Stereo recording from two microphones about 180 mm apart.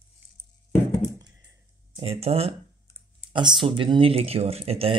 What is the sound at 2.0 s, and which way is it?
Speech, 35° right (ahead or behind).